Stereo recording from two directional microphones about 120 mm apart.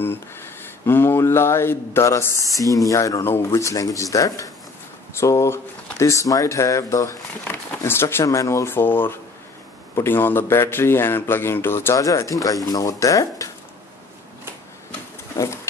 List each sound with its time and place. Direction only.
0.0 s speech: 20° left (ahead or behind)